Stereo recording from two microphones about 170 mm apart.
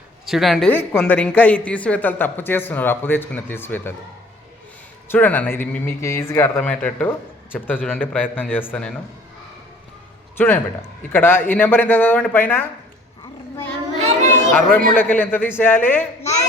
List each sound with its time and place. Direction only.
0.3 s a woman's voice: centre (ahead or behind)
0.7 s speech: 10° left (ahead or behind)
5.0 s speech: 10° left (ahead or behind)
10.3 s a man's voice: 10° left (ahead or behind)
14.0 s chatter: 45° right (ahead or behind)
14.9 s speech: 10° left (ahead or behind)